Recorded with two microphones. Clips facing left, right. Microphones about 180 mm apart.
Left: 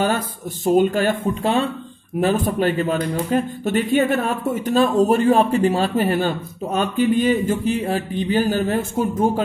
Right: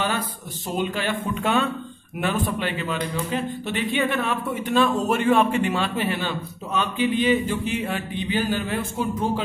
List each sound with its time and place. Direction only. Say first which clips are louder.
0.7 s a man's voice: left 9 dB; 45° left (ahead or behind)